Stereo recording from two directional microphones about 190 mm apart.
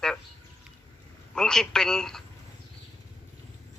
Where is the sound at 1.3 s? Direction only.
5° left (ahead or behind).